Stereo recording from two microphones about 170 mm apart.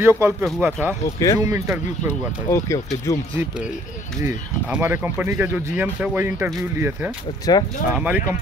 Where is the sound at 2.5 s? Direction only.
20° left (ahead or behind).